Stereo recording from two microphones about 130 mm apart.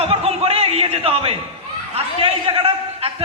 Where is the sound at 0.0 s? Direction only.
50° right (ahead or behind).